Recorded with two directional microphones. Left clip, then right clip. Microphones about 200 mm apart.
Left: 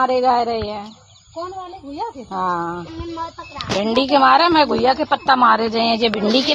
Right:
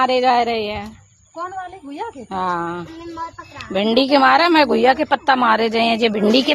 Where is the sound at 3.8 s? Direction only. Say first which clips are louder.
Right 2 dB; 20° right (ahead or behind).